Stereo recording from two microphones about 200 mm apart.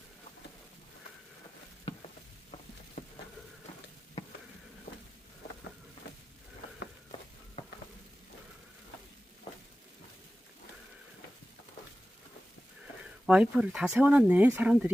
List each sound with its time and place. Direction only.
3.0 s a sound: 40° left (ahead or behind)
7.6 s frying: 35° left (ahead or behind)
13.2 s speech: 5° right (ahead or behind)